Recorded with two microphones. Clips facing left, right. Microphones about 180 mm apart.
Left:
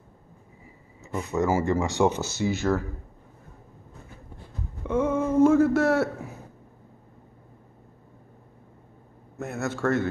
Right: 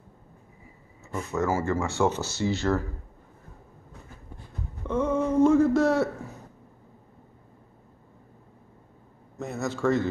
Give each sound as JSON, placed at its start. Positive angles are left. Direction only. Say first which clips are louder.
{"t": 1.0, "sound": "speech", "louder": "left 2 dB", "side_deg": 15}
{"t": 4.8, "sound": "a man's voice", "louder": "left 1 dB", "side_deg": 10}
{"t": 9.4, "sound": "a man's voice", "louder": "even", "side_deg": 5}